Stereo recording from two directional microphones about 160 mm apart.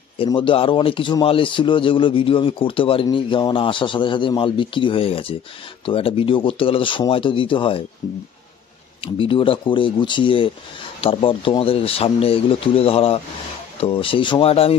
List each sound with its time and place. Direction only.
0.2 s a man's voice: 30° left (ahead or behind)
9.0 s a man's voice: 35° left (ahead or behind)